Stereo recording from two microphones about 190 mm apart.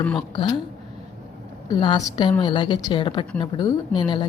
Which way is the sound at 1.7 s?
20° left (ahead or behind).